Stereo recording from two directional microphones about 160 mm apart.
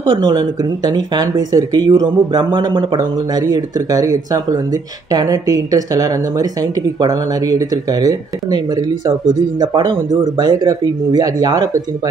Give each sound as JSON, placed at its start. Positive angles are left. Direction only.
{"t": 0.0, "sound": "speech", "side_deg": -25}
{"t": 9.6, "sound": "speech", "side_deg": -25}